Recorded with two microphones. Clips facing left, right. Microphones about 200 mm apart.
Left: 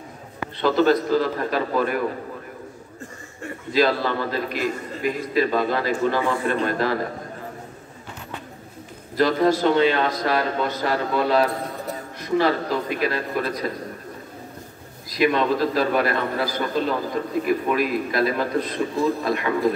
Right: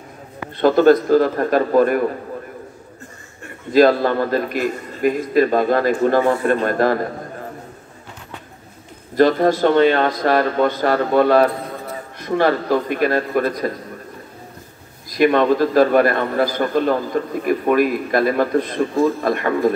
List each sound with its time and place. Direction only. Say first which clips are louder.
0.6 s a man's voice: right 6 dB; 50° right (ahead or behind)
3.7 s a man's voice: right 7 dB; 50° right (ahead or behind)
9.1 s a man's voice: right 4 dB; 50° right (ahead or behind)
15.0 s a man's voice: right 5 dB; 50° right (ahead or behind)